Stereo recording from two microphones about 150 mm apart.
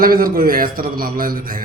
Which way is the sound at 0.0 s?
75° right (ahead or behind).